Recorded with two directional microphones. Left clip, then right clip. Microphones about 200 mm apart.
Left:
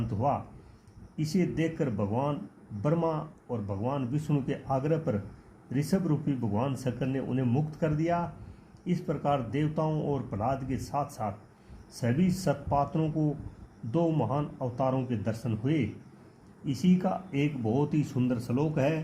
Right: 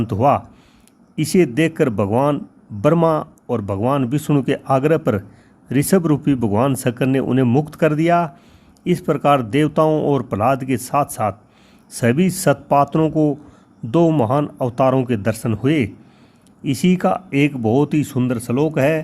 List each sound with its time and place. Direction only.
0.1 s speech: 55° right (ahead or behind)